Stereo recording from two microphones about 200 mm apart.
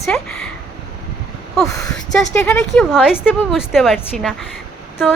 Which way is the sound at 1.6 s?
15° left (ahead or behind).